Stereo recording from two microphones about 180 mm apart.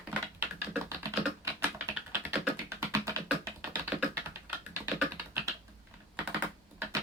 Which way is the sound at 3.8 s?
10° right (ahead or behind).